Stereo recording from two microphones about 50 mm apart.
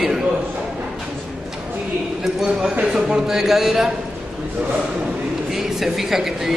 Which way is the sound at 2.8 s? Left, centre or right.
Centre.